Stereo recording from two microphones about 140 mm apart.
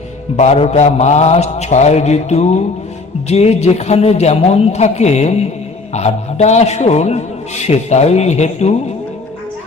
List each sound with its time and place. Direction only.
0.3 s a man's voice: 50° left (ahead or behind)